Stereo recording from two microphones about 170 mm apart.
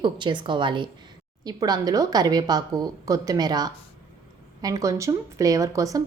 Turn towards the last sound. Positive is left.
turn(degrees=-20)  # may be behind; listen again after turning